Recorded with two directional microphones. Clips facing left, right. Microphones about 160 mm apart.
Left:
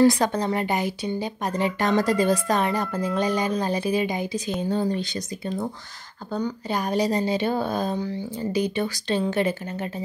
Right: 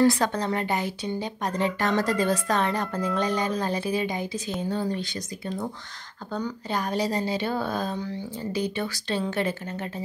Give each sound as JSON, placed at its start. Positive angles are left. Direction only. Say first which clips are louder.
{"t": 0.0, "sound": "a woman's voice", "louder": "left 3 dB", "side_deg": 15}
{"t": 6.7, "sound": "a woman's voice", "louder": "left 3 dB", "side_deg": 15}